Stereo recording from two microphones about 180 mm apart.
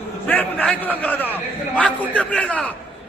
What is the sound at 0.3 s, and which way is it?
A man's voice, 10° left (ahead or behind).